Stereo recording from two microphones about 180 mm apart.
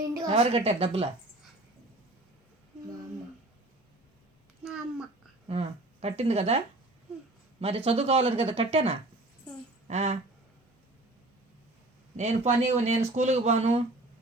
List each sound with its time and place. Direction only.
0.1 s a woman's voice: 20° right (ahead or behind)
0.3 s speech: 35° right (ahead or behind)
4.6 s babbling: 5° right (ahead or behind)
5.5 s speech: 35° right (ahead or behind)
7.9 s speech: 35° right (ahead or behind)
12.1 s speech: 40° right (ahead or behind)